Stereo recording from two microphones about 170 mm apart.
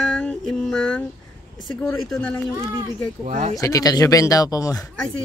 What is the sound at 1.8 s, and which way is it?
Speech, 10° left (ahead or behind).